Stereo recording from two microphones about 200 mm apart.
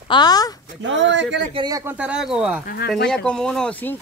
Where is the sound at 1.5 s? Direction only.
20° right (ahead or behind).